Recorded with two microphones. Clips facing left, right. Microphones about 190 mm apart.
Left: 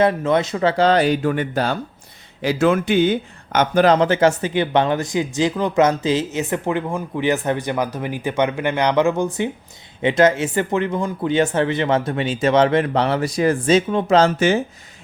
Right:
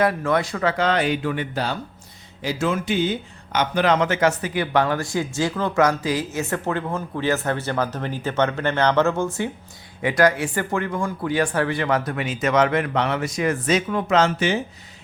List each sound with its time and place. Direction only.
0.0 s speech: 20° left (ahead or behind); by 1.8 s 50° left (ahead or behind)
2.4 s speech: 60° left (ahead or behind); by 14.6 s 45° left (ahead or behind)